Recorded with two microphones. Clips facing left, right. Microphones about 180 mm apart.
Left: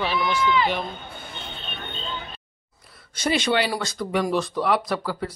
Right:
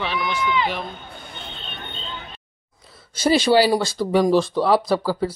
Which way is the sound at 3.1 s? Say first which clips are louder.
Right 6 dB; 35° right (ahead or behind).